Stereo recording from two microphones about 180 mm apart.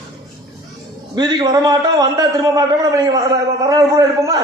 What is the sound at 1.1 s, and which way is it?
A man's voice, 25° right (ahead or behind).